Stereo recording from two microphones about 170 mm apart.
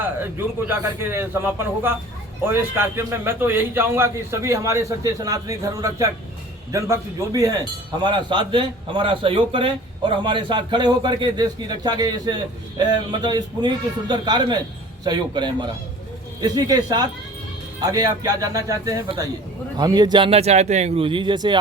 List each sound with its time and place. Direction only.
0.0 s a man's voice: 10° right (ahead or behind)